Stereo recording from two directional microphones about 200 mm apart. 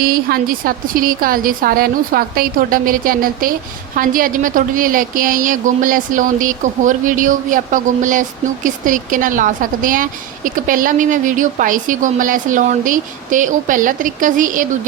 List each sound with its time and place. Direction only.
0.0 s a woman's voice: 45° right (ahead or behind)